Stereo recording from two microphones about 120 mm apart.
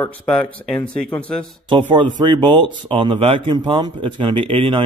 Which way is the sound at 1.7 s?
40° right (ahead or behind).